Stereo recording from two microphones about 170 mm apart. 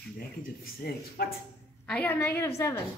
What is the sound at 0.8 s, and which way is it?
Speech, 65° left (ahead or behind).